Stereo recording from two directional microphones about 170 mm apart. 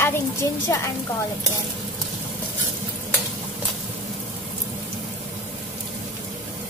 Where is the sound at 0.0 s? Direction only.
15° left (ahead or behind).